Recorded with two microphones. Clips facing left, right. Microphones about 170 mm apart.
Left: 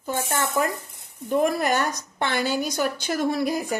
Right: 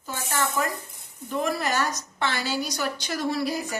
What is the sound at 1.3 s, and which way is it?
A woman's voice, 50° left (ahead or behind).